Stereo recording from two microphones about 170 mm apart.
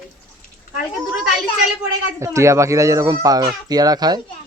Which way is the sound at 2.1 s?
15° right (ahead or behind).